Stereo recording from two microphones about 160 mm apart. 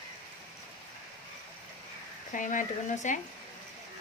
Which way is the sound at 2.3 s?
55° left (ahead or behind).